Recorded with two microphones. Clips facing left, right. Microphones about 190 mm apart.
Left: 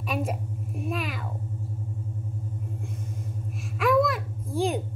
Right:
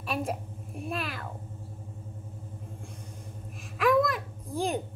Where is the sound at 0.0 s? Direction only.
Centre (ahead or behind).